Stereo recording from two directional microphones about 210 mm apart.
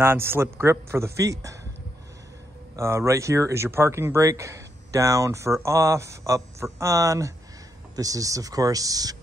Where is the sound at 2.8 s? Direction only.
15° right (ahead or behind).